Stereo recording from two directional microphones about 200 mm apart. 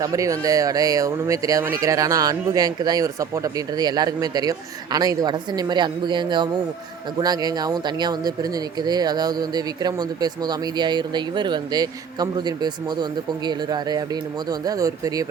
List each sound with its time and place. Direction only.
0.0 s speech: 15° right (ahead or behind)